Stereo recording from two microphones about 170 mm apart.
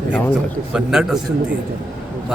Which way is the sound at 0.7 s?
5° right (ahead or behind).